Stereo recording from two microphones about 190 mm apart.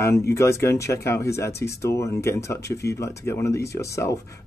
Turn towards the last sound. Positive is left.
turn(degrees=15)  # may be behind; listen again after turning